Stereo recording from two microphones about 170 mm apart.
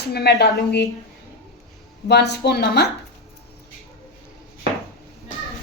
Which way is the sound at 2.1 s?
80° left.